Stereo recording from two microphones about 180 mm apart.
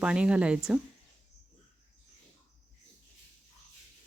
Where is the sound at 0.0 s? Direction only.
5° right (ahead or behind).